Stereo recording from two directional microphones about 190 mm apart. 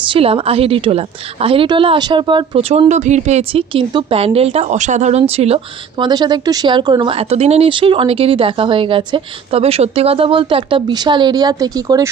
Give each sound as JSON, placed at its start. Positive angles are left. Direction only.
{"t": 0.0, "sound": "a woman's voice", "side_deg": -30}